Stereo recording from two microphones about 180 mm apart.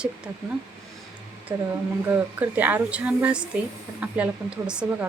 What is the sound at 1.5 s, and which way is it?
Speech, 15° right (ahead or behind).